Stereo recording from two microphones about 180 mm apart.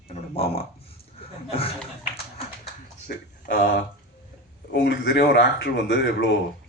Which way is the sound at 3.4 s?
55° left (ahead or behind).